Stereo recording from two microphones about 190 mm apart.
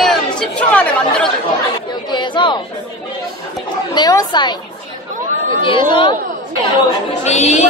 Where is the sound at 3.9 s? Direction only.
20° left (ahead or behind).